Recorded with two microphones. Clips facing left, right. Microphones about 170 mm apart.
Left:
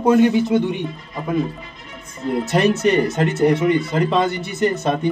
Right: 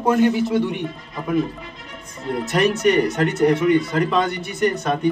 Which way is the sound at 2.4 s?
25° left (ahead or behind).